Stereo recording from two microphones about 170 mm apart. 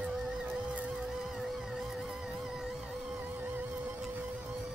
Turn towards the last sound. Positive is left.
turn(degrees=-10)  # may be behind; listen again after turning